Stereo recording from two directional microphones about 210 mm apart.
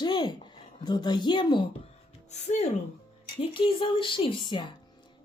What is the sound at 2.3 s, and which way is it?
A woman's voice, 30° left (ahead or behind).